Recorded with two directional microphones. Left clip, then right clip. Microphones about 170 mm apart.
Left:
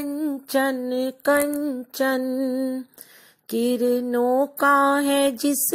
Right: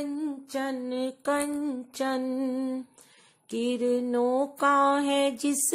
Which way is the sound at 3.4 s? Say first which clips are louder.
Left 6 dB; 30° left (ahead or behind).